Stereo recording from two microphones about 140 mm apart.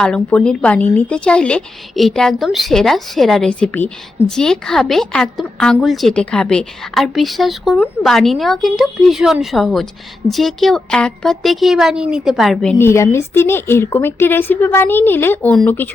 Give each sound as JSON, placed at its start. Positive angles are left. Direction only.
{"t": 0.0, "sound": "speech", "side_deg": 5}
{"t": 12.8, "sound": "a woman's voice", "side_deg": 20}